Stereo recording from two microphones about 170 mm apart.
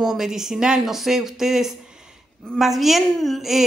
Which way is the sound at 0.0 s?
Centre (ahead or behind).